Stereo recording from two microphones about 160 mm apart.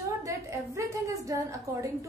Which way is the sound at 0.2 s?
20° right (ahead or behind).